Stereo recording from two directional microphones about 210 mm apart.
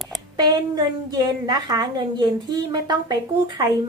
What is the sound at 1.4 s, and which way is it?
A woman's voice, 20° right (ahead or behind).